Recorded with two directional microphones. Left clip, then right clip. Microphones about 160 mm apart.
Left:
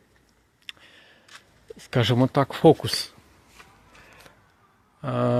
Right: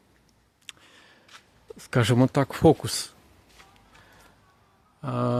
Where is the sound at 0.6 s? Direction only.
20° right (ahead or behind).